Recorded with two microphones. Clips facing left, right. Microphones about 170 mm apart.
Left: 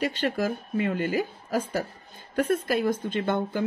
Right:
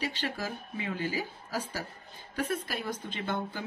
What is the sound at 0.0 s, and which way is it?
Speech, 55° left (ahead or behind).